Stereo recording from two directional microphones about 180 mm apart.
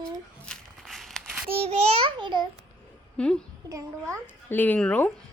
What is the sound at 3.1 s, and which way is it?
Speech, 5° left (ahead or behind).